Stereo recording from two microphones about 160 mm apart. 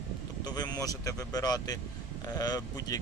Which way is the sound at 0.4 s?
25° left (ahead or behind).